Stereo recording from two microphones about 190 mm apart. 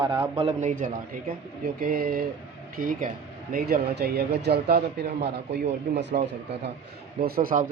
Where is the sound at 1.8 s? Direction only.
50° right (ahead or behind).